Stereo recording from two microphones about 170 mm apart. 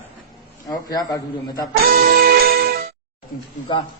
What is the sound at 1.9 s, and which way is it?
Music, 60° right (ahead or behind).